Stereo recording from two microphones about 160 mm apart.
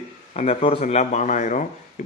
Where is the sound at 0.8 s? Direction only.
45° left (ahead or behind).